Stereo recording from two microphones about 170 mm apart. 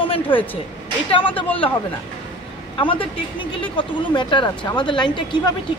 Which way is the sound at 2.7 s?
30° left (ahead or behind).